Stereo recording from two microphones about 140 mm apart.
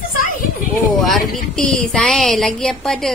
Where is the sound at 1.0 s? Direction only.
Centre (ahead or behind).